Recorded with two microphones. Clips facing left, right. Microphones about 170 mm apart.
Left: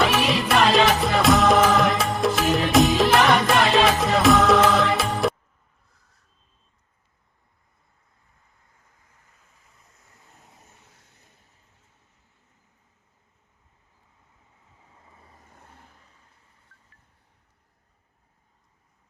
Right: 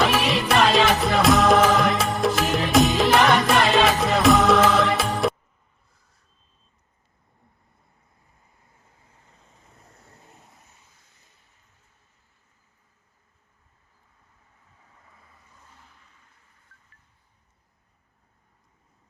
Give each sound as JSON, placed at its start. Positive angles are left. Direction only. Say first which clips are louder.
{"t": 0.0, "sound": "music", "louder": "even", "side_deg": 0}
{"t": 5.9, "sound": "a sound", "louder": "even", "side_deg": 0}
{"t": 9.0, "sound": "vehicle", "louder": "right 4 dB", "side_deg": -25}
{"t": 10.8, "sound": "a sound", "louder": "left 3 dB", "side_deg": 65}
{"t": 14.9, "sound": "vehicle", "louder": "left 4 dB", "side_deg": 25}
{"t": 15.4, "sound": "vehicle", "louder": "left 3 dB", "side_deg": 55}